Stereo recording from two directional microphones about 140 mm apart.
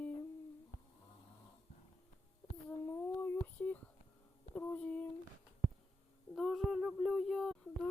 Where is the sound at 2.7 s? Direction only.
15° left (ahead or behind).